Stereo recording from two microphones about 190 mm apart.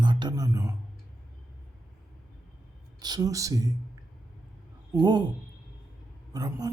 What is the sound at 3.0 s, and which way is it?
Speech, 20° right (ahead or behind).